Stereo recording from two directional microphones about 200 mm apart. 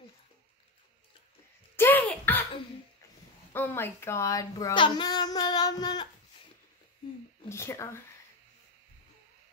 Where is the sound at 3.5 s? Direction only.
10° left (ahead or behind).